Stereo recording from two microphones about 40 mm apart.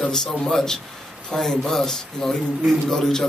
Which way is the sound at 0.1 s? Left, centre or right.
Centre.